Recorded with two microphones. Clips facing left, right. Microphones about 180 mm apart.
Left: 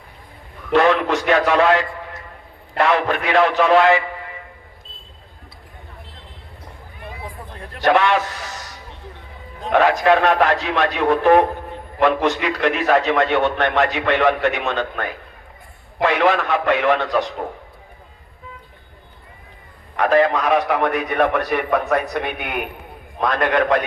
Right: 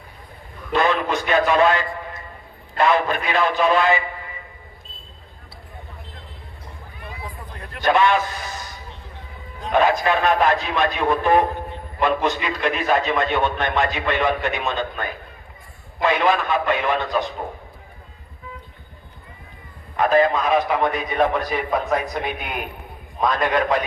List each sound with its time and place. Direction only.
0.7 s a man's voice: 75° left (ahead or behind)
7.8 s a man's voice: 75° left (ahead or behind)
20.0 s a man's voice: 70° left (ahead or behind)